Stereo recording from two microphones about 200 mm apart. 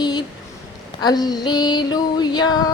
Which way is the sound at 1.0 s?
20° left (ahead or behind).